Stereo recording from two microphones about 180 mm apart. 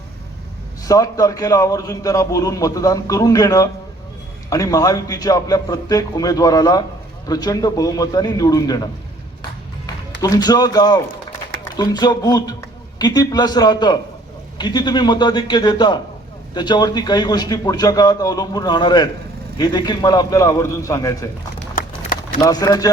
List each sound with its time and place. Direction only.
0.9 s a man's voice: 20° left (ahead or behind)
10.2 s a man's voice: 20° left (ahead or behind)
21.8 s a sound: 50° left (ahead or behind)
22.4 s a man's voice: 20° left (ahead or behind)